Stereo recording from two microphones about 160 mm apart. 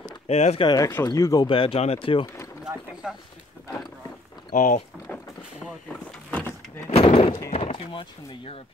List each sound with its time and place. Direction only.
0.3 s speech: 45° left (ahead or behind)
0.7 s speech: 20° left (ahead or behind); by 2.2 s 35° left (ahead or behind)
2.6 s a sound: 5° right (ahead or behind)
4.5 s speech: 50° left (ahead or behind)
6.9 s a sound: 40° left (ahead or behind)
7.5 s speech: 35° left (ahead or behind)